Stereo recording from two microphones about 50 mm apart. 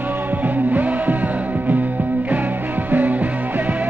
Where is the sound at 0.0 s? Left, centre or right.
Right.